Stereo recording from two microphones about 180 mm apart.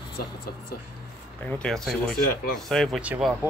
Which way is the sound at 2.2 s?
55° left (ahead or behind).